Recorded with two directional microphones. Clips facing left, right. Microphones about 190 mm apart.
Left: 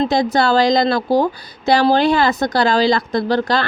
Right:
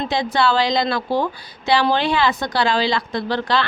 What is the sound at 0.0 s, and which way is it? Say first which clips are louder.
A woman's voice: left 4 dB; 40° left (ahead or behind).